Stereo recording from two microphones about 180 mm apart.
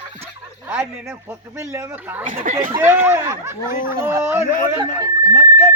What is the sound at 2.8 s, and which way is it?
Speech, 10° right (ahead or behind).